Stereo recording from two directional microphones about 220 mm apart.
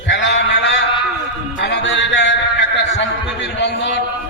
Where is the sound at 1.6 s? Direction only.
55° left (ahead or behind).